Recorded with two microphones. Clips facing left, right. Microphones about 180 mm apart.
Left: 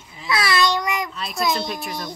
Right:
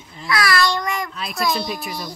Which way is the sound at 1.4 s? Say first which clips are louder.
Even; 20° left (ahead or behind).